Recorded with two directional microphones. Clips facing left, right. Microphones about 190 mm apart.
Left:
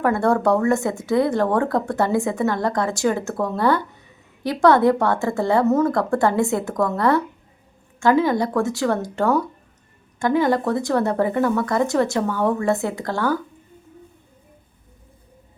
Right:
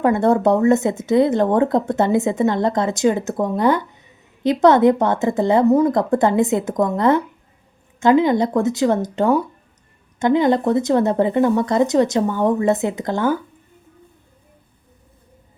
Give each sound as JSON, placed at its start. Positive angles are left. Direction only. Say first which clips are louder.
{"t": 0.0, "sound": "speech", "louder": "right 3 dB", "side_deg": -20}